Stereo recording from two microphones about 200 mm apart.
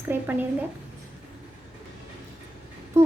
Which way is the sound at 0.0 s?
10° right (ahead or behind).